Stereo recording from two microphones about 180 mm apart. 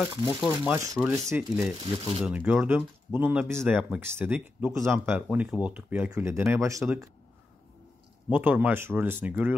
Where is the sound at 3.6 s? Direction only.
Centre (ahead or behind).